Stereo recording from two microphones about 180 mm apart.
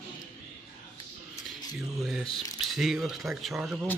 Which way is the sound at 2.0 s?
Centre (ahead or behind).